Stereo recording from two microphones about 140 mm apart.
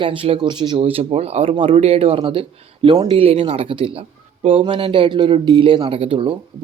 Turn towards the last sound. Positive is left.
turn(degrees=-40)  # may be behind; listen again after turning